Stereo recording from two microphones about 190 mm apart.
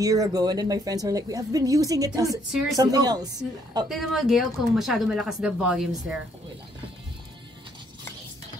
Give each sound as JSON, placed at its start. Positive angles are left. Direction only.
{"t": 0.0, "sound": "speech", "side_deg": -20}
{"t": 3.9, "sound": "speech", "side_deg": 0}